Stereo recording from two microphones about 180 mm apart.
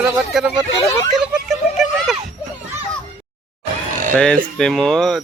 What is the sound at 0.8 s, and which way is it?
Speech, 15° left (ahead or behind).